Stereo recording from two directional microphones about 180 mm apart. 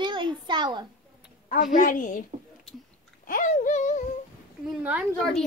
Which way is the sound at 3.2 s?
45° left (ahead or behind).